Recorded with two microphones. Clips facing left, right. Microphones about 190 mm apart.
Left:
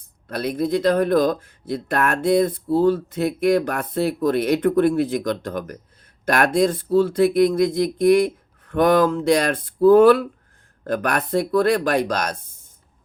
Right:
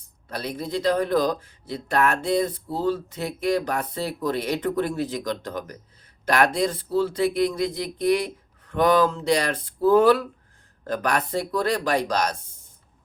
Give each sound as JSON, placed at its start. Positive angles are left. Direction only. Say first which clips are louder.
{"t": 0.3, "sound": "speech", "louder": "left 8 dB", "side_deg": 55}